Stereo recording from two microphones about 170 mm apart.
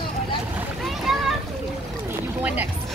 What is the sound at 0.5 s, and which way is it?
Boat, centre (ahead or behind).